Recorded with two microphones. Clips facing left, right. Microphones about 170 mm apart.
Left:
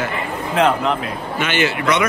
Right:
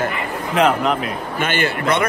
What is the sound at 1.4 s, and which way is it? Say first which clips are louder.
Speech: left 1 dB; 50° right (ahead or behind).